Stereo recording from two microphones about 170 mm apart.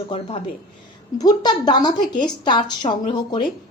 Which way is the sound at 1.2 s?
25° left (ahead or behind).